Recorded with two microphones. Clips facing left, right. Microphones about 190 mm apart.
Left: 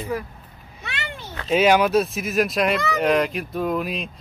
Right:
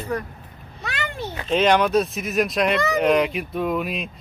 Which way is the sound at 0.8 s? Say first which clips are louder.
Right 4 dB; 45° right (ahead or behind).